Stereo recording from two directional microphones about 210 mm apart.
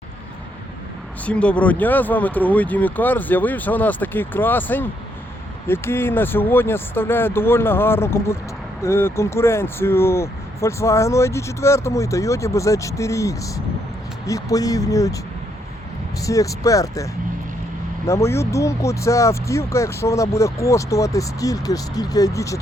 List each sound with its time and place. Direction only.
1.2 s speech: 5° left (ahead or behind)
16.2 s speech: 15° left (ahead or behind)